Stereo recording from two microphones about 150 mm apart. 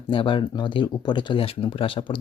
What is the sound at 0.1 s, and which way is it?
Speech, 35° left (ahead or behind).